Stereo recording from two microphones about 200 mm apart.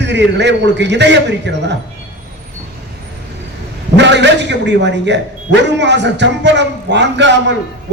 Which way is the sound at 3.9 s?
60° right (ahead or behind).